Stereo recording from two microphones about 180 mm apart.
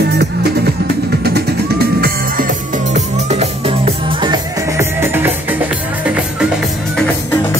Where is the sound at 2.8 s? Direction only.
40° right (ahead or behind); by 6.5 s 5° right (ahead or behind).